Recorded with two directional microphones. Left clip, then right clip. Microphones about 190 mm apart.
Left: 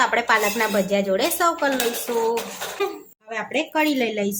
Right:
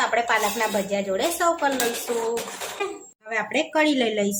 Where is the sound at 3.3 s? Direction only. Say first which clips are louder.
Right 1 dB; centre (ahead or behind).